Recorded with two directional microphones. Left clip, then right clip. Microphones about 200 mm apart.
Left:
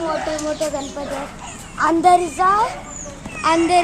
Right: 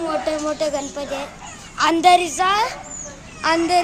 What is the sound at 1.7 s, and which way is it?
Speech, 30° right (ahead or behind).